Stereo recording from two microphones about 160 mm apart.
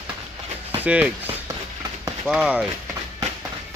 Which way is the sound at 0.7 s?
10° right (ahead or behind).